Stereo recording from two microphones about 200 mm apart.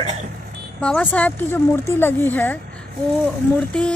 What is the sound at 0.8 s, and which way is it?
Speech, 5° left (ahead or behind).